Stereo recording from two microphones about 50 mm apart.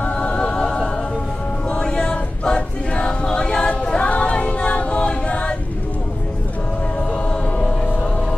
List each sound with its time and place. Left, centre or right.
0.0 s music: left
1.7 s choir: centre
7.2 s a sound: left